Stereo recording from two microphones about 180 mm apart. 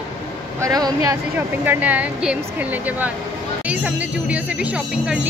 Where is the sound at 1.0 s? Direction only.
10° right (ahead or behind).